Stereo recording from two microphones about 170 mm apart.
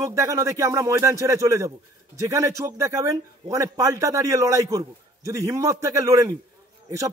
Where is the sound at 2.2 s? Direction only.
20° right (ahead or behind).